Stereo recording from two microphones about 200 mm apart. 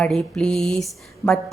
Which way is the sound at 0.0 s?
5° left (ahead or behind).